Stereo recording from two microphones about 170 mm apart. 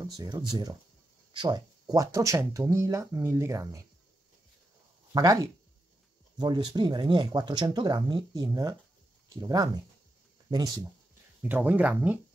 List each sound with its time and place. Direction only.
0.0 s speech: 25° right (ahead or behind)
5.1 s speech: 20° right (ahead or behind)
11.4 s speech: 10° right (ahead or behind)